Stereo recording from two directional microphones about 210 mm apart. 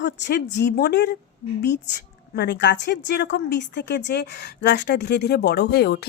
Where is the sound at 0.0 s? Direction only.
55° left (ahead or behind).